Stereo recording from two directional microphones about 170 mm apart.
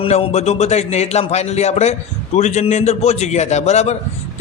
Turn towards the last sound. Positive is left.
turn(degrees=40)  # may be behind; listen again after turning